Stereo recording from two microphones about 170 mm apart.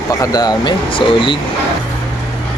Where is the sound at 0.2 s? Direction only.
25° left (ahead or behind).